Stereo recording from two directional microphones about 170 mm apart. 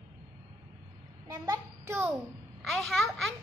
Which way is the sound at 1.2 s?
20° right (ahead or behind).